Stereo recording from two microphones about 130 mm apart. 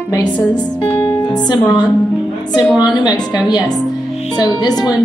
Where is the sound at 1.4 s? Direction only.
35° left (ahead or behind).